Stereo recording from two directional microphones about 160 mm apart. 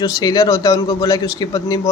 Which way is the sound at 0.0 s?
25° left (ahead or behind).